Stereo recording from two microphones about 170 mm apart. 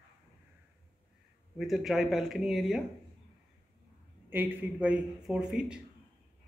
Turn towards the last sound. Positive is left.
turn(degrees=-5)  # may be behind; listen again after turning